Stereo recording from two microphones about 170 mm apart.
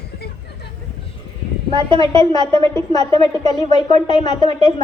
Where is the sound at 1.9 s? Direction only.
25° left (ahead or behind).